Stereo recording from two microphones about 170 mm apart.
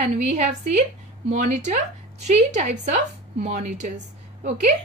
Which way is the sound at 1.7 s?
45° right (ahead or behind).